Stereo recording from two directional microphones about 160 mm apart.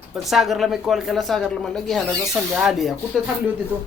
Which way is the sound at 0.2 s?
Centre (ahead or behind).